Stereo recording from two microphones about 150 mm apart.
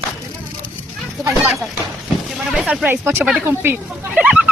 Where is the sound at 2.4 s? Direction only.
5° right (ahead or behind).